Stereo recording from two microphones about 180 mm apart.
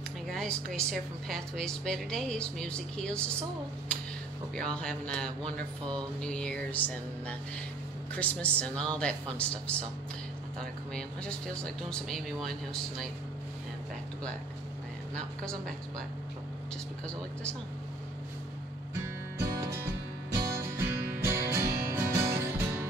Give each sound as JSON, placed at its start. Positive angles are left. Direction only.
{"t": 0.3, "sound": "speech", "side_deg": 5}
{"t": 4.6, "sound": "speech", "side_deg": 5}
{"t": 11.0, "sound": "speech", "side_deg": 5}
{"t": 18.9, "sound": "music", "side_deg": -15}